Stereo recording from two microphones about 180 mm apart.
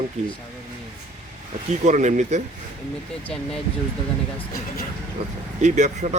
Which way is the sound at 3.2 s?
5° left (ahead or behind).